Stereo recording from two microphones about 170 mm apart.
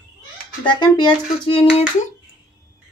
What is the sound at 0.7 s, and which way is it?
Speech, 30° left (ahead or behind).